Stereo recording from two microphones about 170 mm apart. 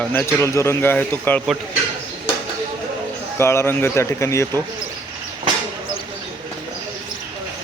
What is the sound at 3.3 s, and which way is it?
Speech, 15° left (ahead or behind).